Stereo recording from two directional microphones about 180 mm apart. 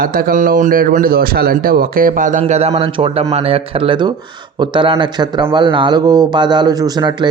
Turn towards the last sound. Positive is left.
turn(degrees=-25)  # may be behind; listen again after turning